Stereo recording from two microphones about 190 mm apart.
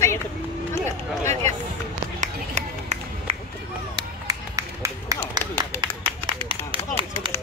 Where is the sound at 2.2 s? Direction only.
35° right (ahead or behind).